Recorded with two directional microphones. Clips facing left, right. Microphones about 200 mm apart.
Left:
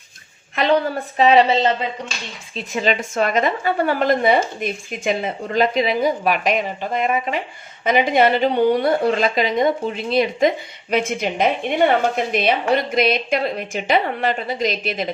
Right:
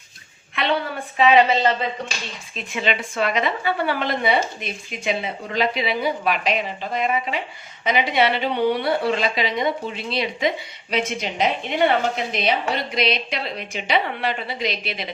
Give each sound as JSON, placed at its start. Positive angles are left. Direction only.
{"t": 0.5, "sound": "a woman's voice", "side_deg": 40}
{"t": 2.6, "sound": "a woman's voice", "side_deg": 40}